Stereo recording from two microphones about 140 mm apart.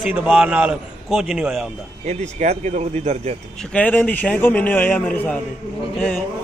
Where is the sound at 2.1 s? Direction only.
55° right (ahead or behind).